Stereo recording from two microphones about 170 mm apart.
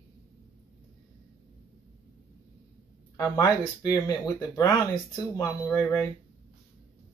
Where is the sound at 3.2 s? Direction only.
20° left (ahead or behind).